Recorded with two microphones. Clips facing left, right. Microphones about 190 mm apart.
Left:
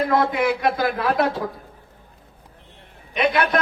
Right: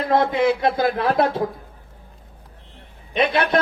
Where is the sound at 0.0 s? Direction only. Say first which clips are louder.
Right 1 dB; 25° right (ahead or behind).